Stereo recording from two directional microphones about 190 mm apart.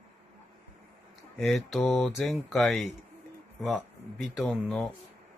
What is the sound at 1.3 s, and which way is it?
Speech, centre (ahead or behind).